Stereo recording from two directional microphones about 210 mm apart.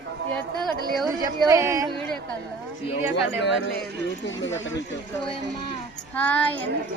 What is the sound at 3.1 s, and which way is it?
Speech, 55° left (ahead or behind).